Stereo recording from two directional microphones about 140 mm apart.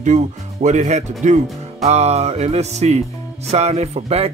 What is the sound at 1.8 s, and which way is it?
Music, 50° right (ahead or behind).